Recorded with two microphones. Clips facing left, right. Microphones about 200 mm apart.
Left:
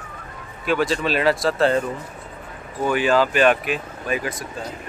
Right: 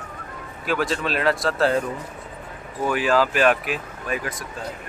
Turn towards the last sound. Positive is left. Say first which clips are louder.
# left 3 dB
turn(degrees=0)  # may be behind; listen again after turning